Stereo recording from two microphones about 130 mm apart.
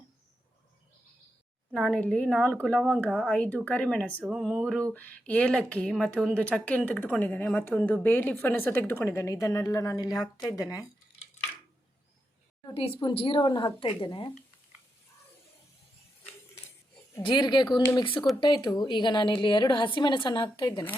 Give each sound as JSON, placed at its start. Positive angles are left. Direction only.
{"t": 1.7, "sound": "a woman's voice", "side_deg": 10}
{"t": 4.2, "sound": "a sound", "side_deg": -5}
{"t": 4.9, "sound": "a woman's voice", "side_deg": 10}
{"t": 12.7, "sound": "a woman's voice", "side_deg": 45}
{"t": 17.2, "sound": "a woman's voice", "side_deg": 35}